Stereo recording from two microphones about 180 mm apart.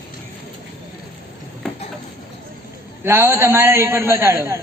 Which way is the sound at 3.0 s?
15° right (ahead or behind).